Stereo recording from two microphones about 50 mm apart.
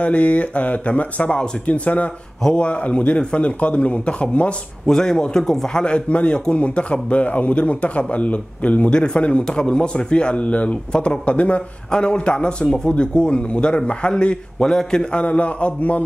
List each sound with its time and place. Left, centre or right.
0.0 s a man's voice: left